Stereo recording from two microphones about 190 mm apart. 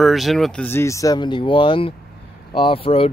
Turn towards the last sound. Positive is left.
turn(degrees=30)  # may be behind; listen again after turning